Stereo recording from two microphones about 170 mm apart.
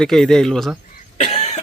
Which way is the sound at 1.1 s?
40° left (ahead or behind).